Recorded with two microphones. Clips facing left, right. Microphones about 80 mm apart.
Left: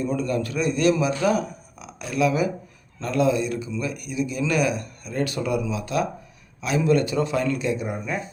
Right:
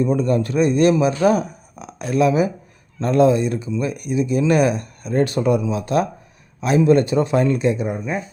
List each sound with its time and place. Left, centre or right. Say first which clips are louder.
0.0 s speech: right 6 dB; right